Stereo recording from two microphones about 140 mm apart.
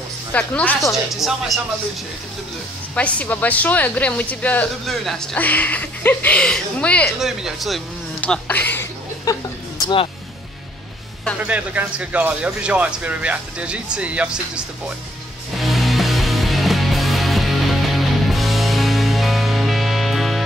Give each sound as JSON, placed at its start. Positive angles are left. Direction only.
{"t": 0.3, "sound": "a woman's voice", "side_deg": 10}
{"t": 1.1, "sound": "speech", "side_deg": 0}
{"t": 3.0, "sound": "a woman's voice", "side_deg": 10}
{"t": 7.2, "sound": "speech", "side_deg": -5}
{"t": 8.2, "sound": "a woman's voice", "side_deg": 10}
{"t": 9.2, "sound": "a sound", "side_deg": 30}
{"t": 11.4, "sound": "speech", "side_deg": -10}
{"t": 15.6, "sound": "music", "side_deg": 0}